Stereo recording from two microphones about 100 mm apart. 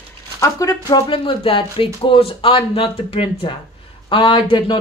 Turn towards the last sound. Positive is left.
turn(degrees=55)  # may be behind; listen again after turning